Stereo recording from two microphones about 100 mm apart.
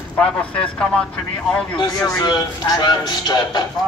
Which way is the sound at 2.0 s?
40° left (ahead or behind).